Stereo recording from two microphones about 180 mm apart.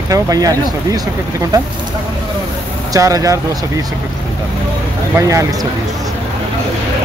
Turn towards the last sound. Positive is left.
turn(degrees=-15)  # may be behind; listen again after turning